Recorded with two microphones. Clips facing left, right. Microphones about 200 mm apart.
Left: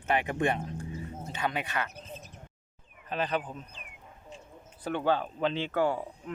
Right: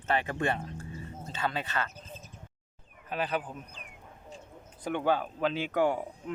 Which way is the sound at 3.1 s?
5° right (ahead or behind).